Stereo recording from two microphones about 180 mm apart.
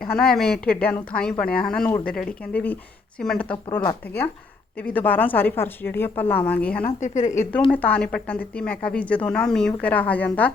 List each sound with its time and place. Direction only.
0.2 s a woman's voice: 5° left (ahead or behind)
4.8 s speech: 10° left (ahead or behind)
6.8 s a woman's voice: 40° left (ahead or behind)
7.7 s speech: 10° left (ahead or behind)